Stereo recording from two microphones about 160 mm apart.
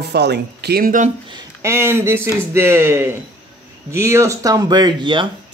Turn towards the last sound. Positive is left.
turn(degrees=-30)  # may be behind; listen again after turning